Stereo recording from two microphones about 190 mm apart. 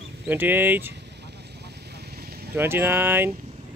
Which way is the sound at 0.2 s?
10° right (ahead or behind).